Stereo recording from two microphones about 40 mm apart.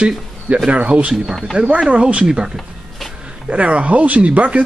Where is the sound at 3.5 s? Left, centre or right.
Right.